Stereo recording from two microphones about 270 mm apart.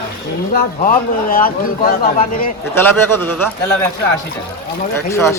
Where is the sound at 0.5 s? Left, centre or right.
Left.